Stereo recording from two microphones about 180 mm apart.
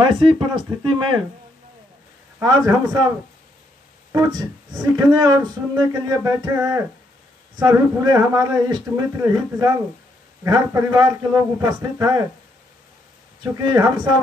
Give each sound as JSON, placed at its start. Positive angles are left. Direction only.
{"t": 0.0, "sound": "speech", "side_deg": -30}
{"t": 2.4, "sound": "speech", "side_deg": -20}
{"t": 4.1, "sound": "a man's voice", "side_deg": -20}
{"t": 13.4, "sound": "speech", "side_deg": -20}